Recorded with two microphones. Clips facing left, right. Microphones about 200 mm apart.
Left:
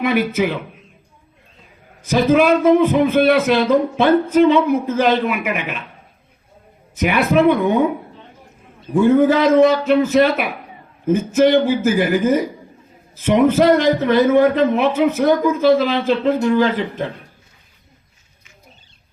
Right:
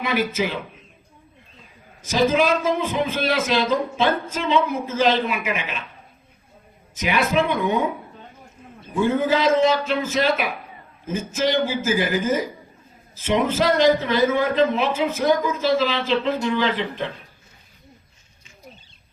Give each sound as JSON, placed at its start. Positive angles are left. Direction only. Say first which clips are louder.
{"t": 0.0, "sound": "a man's voice", "louder": "left 5 dB", "side_deg": 60}
{"t": 2.0, "sound": "a man's voice", "louder": "left 5 dB", "side_deg": 60}
{"t": 6.9, "sound": "a man's voice", "louder": "left 5 dB", "side_deg": 60}
{"t": 9.0, "sound": "a man's voice", "louder": "left 7 dB", "side_deg": 60}